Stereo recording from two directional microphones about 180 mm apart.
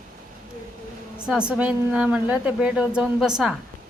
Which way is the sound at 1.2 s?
5° right (ahead or behind).